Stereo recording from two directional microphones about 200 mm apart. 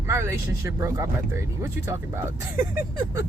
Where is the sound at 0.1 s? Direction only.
15° right (ahead or behind).